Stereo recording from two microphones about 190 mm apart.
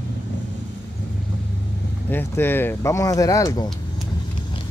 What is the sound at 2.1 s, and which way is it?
Speech, 10° left (ahead or behind).